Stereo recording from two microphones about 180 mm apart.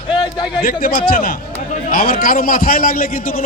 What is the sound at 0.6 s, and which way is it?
A man's voice, 55° left (ahead or behind).